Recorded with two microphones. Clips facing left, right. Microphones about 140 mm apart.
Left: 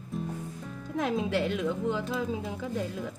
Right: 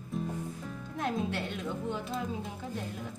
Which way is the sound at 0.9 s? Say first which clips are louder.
Left 5 dB; 90° left.